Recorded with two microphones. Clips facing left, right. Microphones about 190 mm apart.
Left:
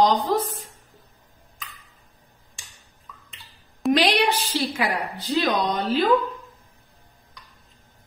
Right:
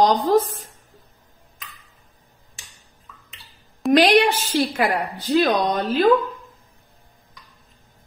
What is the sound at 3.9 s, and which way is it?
A woman's voice, 50° right (ahead or behind).